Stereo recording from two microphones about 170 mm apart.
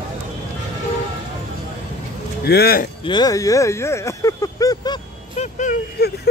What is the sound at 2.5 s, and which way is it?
Speech, 65° left (ahead or behind).